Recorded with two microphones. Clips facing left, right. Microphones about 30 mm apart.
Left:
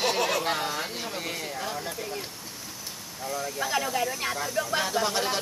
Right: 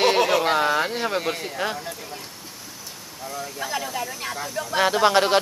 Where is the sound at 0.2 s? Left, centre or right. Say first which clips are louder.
Right 7 dB; centre.